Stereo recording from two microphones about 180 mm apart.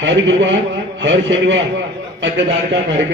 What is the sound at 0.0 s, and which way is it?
A man's voice, 85° right.